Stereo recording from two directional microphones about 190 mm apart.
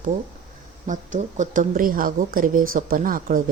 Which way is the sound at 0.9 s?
40° right (ahead or behind).